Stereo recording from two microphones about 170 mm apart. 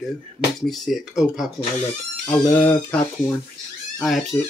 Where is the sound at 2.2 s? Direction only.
10° left (ahead or behind).